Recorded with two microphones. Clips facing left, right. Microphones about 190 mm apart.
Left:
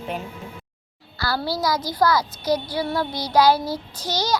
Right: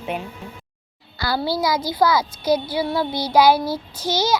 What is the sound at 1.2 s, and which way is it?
A child's voice, 15° right (ahead or behind).